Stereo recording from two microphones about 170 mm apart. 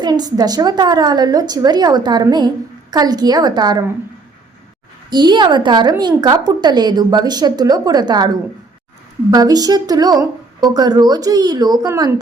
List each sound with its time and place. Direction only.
0.0 s a woman's voice: 25° right (ahead or behind)
5.1 s a woman's voice: 25° right (ahead or behind)
9.3 s a woman's voice: 20° right (ahead or behind)